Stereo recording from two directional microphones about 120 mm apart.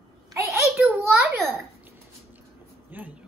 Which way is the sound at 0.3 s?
25° right (ahead or behind).